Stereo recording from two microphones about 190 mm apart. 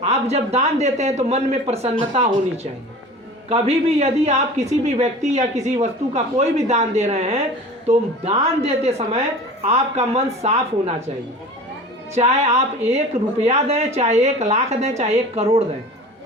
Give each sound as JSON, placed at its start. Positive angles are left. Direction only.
{"t": 0.0, "sound": "speech", "side_deg": -35}
{"t": 3.5, "sound": "speech", "side_deg": -35}
{"t": 12.1, "sound": "speech", "side_deg": -35}